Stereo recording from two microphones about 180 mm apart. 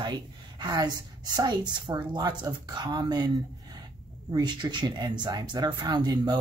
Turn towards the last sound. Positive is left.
turn(degrees=-20)  # may be behind; listen again after turning